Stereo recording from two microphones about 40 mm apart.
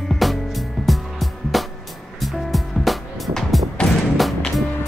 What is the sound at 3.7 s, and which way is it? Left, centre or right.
Music, centre.